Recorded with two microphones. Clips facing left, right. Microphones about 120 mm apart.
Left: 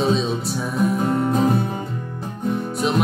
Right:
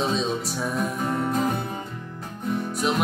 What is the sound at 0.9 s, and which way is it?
Music, 25° left (ahead or behind).